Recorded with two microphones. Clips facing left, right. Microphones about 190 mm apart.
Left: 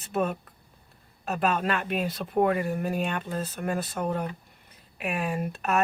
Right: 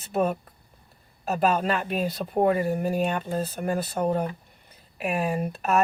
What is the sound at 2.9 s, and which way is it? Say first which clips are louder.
Speech: right 4 dB; 40° right (ahead or behind).